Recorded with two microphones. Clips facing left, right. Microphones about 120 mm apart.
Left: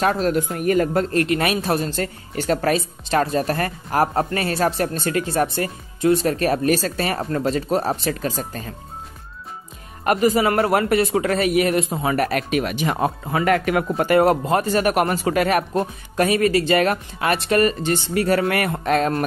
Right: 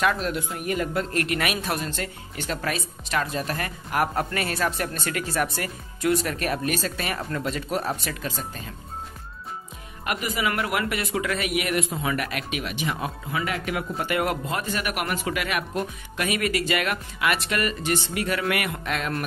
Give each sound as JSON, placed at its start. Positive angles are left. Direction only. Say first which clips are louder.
{"t": 0.0, "sound": "speech", "louder": "left 5 dB", "side_deg": 35}
{"t": 1.1, "sound": "speech", "louder": "left 6 dB", "side_deg": 30}
{"t": 8.2, "sound": "speech", "louder": "left 6 dB", "side_deg": 45}
{"t": 10.0, "sound": "speech", "louder": "left 10 dB", "side_deg": 40}
{"t": 13.9, "sound": "speech", "louder": "left 10 dB", "side_deg": 40}